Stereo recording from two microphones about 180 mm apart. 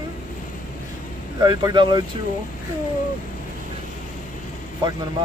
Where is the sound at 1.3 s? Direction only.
25° right (ahead or behind).